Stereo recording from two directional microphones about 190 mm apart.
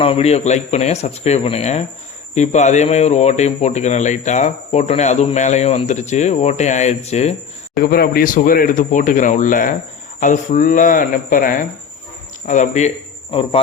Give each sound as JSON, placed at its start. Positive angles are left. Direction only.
{"t": 0.0, "sound": "speech", "side_deg": 30}
{"t": 7.8, "sound": "speech", "side_deg": 50}